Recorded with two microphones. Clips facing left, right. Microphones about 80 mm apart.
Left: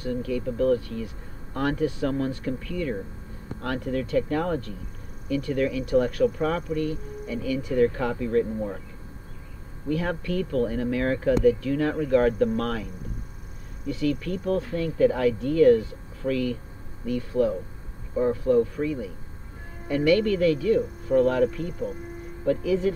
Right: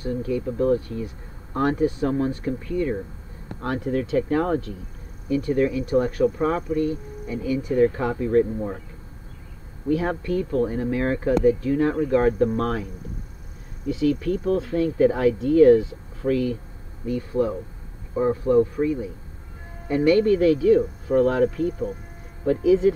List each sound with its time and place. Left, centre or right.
0.0 s speech: right
9.8 s speech: right
13.9 s speech: right
20.1 s speech: right
22.5 s speech: right